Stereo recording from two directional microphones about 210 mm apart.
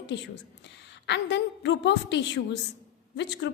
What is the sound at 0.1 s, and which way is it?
A woman's voice, 55° left (ahead or behind).